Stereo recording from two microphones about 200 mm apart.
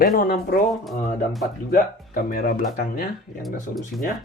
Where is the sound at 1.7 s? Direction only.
45° left (ahead or behind).